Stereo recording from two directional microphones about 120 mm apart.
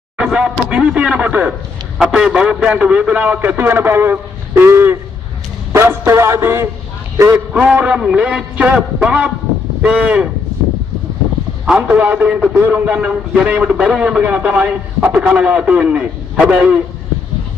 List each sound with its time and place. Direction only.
0.2 s a man's voice: 5° right (ahead or behind)
5.7 s music: 20° right (ahead or behind)
7.2 s a man's voice: 20° right (ahead or behind)
7.5 s a man's voice: 10° right (ahead or behind)
11.6 s a man's voice: 10° right (ahead or behind)